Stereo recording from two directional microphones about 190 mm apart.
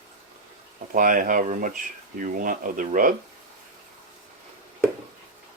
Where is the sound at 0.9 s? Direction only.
45° right (ahead or behind).